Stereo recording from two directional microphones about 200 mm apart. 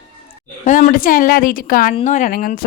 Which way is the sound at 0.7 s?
45° left (ahead or behind).